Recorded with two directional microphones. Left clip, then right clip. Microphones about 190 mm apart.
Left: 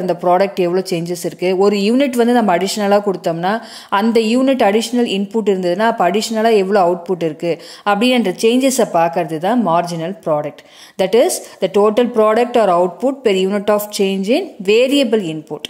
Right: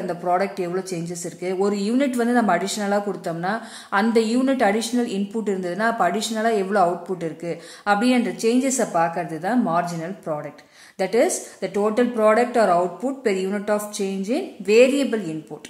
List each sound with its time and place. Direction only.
0.1 s speech: 40° left (ahead or behind)